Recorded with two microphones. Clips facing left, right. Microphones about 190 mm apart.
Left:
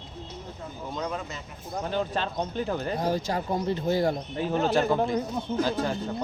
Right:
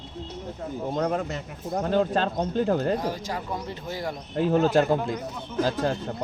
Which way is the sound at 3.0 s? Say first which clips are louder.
Left 3 dB; 30° left (ahead or behind).